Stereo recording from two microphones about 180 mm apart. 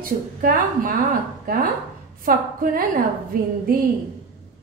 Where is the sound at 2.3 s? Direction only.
50° right (ahead or behind).